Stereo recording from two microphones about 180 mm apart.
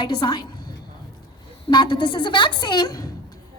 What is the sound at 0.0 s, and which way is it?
Speech, 25° left (ahead or behind).